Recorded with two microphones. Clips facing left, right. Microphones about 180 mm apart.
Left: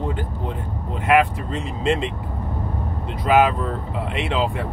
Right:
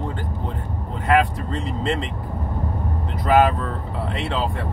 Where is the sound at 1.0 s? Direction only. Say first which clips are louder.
Left 1 dB; 15° left (ahead or behind).